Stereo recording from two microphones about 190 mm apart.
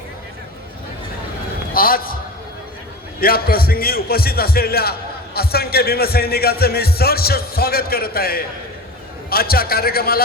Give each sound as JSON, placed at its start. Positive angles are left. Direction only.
{"t": 1.7, "sound": "a man's voice", "side_deg": 50}
{"t": 3.2, "sound": "a man's voice", "side_deg": 50}